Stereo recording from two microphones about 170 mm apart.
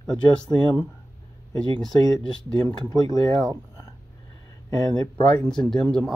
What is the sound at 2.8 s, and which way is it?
Speech, 20° left (ahead or behind).